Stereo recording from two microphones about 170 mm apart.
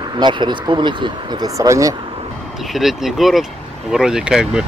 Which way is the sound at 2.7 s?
Centre (ahead or behind).